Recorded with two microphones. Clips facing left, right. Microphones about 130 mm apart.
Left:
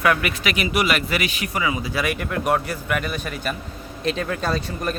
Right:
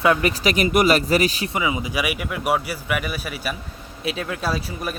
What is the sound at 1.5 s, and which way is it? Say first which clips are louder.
A man's voice: even; 20° right (ahead or behind).